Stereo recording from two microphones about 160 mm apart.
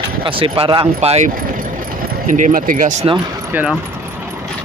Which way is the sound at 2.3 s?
55° right (ahead or behind).